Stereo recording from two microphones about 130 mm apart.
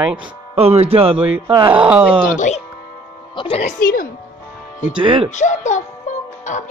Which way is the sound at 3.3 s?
45° left (ahead or behind).